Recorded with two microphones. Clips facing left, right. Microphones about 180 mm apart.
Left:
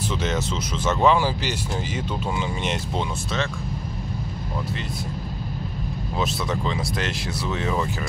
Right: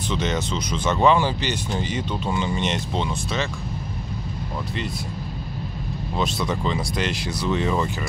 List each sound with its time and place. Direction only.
0.1 s speech: 5° left (ahead or behind)
6.1 s speech: centre (ahead or behind)